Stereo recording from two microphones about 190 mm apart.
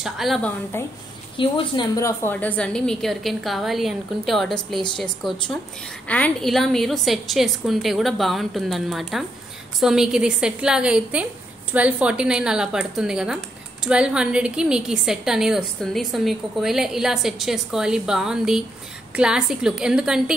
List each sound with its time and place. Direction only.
0.0 s a woman's voice: centre (ahead or behind)
0.7 s a woman's voice: 15° left (ahead or behind)
1.3 s a woman's voice: 25° left (ahead or behind)
2.0 s a woman's voice: 15° left (ahead or behind); by 20.3 s 5° right (ahead or behind)